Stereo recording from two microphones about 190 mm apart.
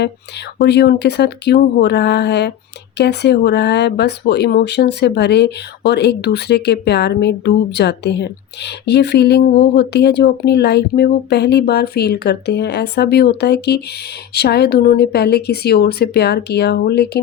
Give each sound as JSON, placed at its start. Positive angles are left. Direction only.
{"t": 0.6, "sound": "speech", "side_deg": 60}